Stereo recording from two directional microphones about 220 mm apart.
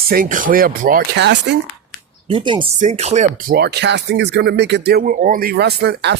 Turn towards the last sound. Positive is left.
turn(degrees=-50)  # may be behind; listen again after turning